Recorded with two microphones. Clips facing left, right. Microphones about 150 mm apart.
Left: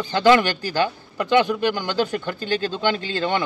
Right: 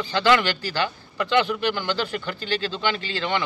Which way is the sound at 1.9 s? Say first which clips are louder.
Left 4 dB; 45° left (ahead or behind).